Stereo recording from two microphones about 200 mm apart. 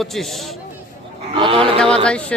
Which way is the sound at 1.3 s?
25° right (ahead or behind).